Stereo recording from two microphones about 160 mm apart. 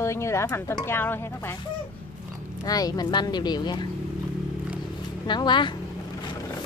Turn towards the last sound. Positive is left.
turn(degrees=30)  # may be behind; listen again after turning